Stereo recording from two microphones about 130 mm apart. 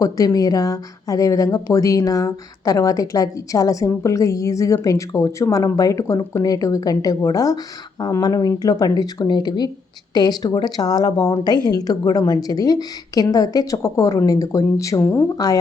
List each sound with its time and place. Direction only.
0.0 s speech: 25° left (ahead or behind)